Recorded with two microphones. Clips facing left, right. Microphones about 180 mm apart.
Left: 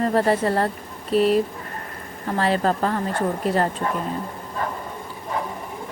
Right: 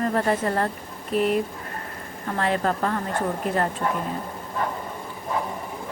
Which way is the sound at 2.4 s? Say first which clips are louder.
Left 3 dB; 30° left (ahead or behind).